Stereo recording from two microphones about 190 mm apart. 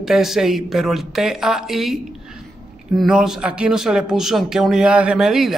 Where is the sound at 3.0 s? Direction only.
5° right (ahead or behind).